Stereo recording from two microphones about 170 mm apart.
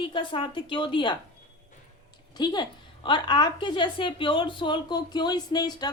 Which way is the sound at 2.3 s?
25° left (ahead or behind).